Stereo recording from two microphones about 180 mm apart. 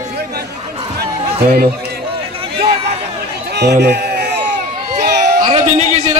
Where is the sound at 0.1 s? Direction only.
60° right (ahead or behind).